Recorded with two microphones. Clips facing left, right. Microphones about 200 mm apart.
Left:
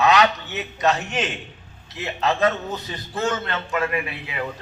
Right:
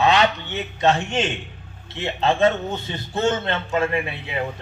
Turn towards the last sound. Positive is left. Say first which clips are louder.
# right 2 dB
turn(degrees=-25)  # may be behind; listen again after turning